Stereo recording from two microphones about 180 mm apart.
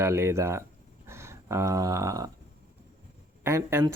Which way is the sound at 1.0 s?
15° right (ahead or behind).